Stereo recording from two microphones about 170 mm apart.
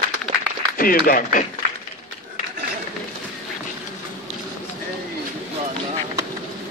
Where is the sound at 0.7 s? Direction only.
55° left (ahead or behind).